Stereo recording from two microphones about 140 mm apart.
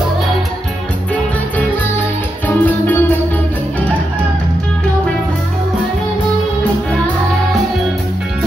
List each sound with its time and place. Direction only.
2.4 s music: 15° left (ahead or behind)